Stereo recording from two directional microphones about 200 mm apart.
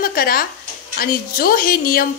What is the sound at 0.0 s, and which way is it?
Speech, 45° left (ahead or behind).